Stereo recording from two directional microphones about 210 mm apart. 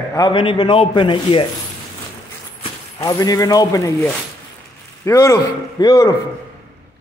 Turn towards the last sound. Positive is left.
turn(degrees=15)  # may be behind; listen again after turning